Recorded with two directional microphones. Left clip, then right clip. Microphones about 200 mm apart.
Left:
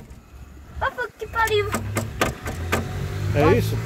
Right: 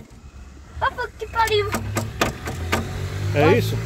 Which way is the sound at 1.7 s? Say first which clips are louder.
Right 1 dB; 10° left (ahead or behind).